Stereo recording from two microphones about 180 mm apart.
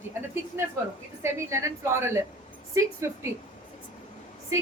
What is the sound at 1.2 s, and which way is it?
A woman's voice, 15° right (ahead or behind).